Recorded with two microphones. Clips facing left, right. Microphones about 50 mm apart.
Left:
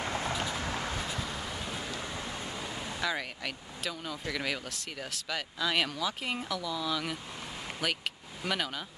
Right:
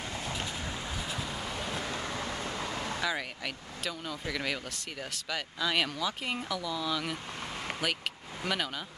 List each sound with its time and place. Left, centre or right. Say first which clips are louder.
0.0 s vehicle: left 4 dB; left
0.7 s vehicle: left 3 dB; left
0.9 s vehicle: left 1 dB; centre
2.6 s a sound: right 3 dB; right
3.0 s speech: left 3 dB; centre